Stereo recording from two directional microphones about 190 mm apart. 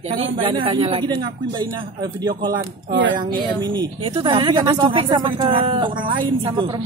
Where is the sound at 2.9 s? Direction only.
80° right.